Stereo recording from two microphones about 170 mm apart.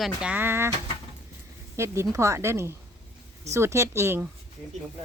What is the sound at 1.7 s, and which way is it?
A woman's voice, 15° right (ahead or behind).